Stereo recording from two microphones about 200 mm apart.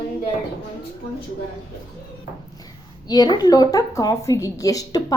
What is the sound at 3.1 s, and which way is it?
A woman's voice, 20° left (ahead or behind).